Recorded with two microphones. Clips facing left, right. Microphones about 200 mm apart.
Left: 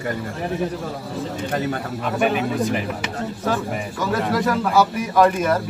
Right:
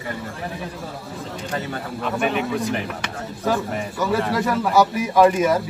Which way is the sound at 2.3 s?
5° left (ahead or behind).